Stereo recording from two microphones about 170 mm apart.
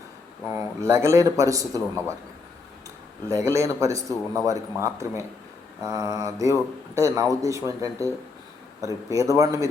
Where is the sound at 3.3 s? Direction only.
20° right (ahead or behind).